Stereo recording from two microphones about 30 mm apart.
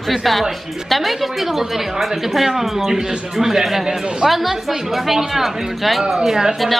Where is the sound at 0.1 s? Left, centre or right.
Centre.